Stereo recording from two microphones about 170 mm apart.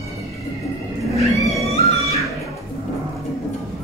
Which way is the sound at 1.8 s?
40° left (ahead or behind).